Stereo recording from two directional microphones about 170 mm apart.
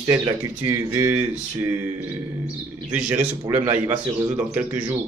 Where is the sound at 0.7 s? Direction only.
15° right (ahead or behind).